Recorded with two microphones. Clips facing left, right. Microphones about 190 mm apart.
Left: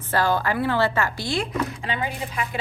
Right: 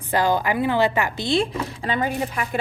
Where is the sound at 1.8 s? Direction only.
45° right (ahead or behind).